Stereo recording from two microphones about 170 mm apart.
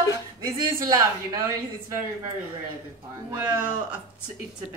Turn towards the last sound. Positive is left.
turn(degrees=-10)  # may be behind; listen again after turning